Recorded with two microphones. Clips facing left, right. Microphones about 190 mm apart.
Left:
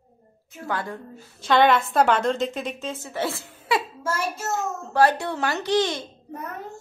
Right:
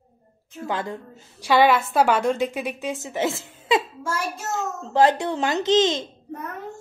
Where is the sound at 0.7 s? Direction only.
20° right (ahead or behind).